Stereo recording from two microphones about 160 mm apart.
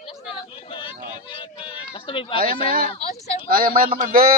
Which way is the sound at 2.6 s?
60° right (ahead or behind).